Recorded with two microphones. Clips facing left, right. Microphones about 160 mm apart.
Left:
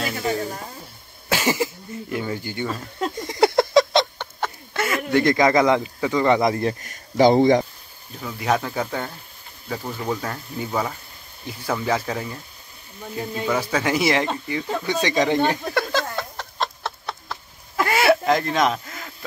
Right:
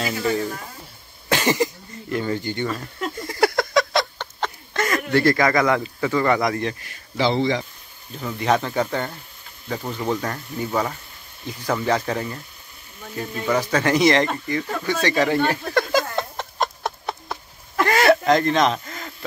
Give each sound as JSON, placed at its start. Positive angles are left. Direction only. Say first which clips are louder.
{"t": 1.3, "sound": "cough", "louder": "right 2 dB", "side_deg": 10}
{"t": 2.1, "sound": "speech", "louder": "right 3 dB", "side_deg": 10}
{"t": 3.2, "sound": "a sound", "louder": "left 2 dB", "side_deg": 20}
{"t": 4.4, "sound": "speech", "louder": "right 1 dB", "side_deg": 10}
{"t": 6.8, "sound": "speech", "louder": "left 6 dB", "side_deg": 45}
{"t": 8.2, "sound": "speech", "louder": "right 2 dB", "side_deg": 0}
{"t": 13.0, "sound": "speech", "louder": "left 2 dB", "side_deg": 20}
{"t": 13.5, "sound": "speech", "louder": "right 3 dB", "side_deg": 5}
{"t": 16.2, "sound": "a sound", "louder": "right 3 dB", "side_deg": -20}
{"t": 17.7, "sound": "a sound", "louder": "right 1 dB", "side_deg": 10}